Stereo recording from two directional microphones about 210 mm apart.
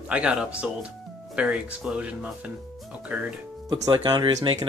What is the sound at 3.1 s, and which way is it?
Speech, centre (ahead or behind).